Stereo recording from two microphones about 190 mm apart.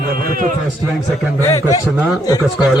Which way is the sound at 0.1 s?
50° right (ahead or behind).